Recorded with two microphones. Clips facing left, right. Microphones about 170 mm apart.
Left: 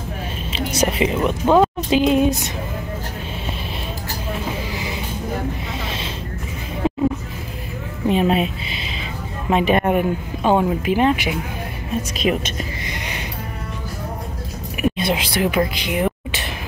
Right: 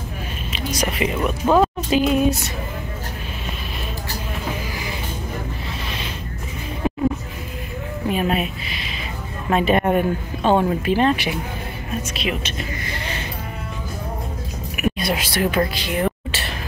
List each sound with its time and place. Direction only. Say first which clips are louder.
0.5 s a woman's voice: left 4 dB; 30° left (ahead or behind)
8.1 s speech: left 4 dB; 25° left (ahead or behind)
9.5 s speech: left 1 dB; 15° left (ahead or behind)
12.2 s speech: left 7 dB; 45° left (ahead or behind)
12.8 s music: even; 15° left (ahead or behind)
14.8 s speech: left 2 dB; 20° left (ahead or behind)